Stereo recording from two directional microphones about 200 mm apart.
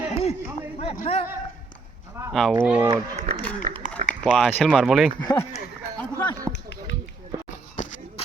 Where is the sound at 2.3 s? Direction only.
Centre (ahead or behind).